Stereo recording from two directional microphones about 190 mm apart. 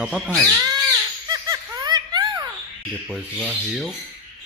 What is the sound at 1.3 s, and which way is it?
Laughter, 20° right (ahead or behind).